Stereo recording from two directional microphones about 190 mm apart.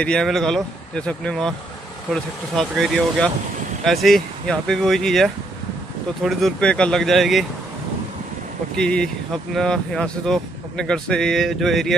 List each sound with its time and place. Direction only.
0.0 s speech: 5° left (ahead or behind)
2.5 s speech: centre (ahead or behind)
8.7 s speech: 5° left (ahead or behind)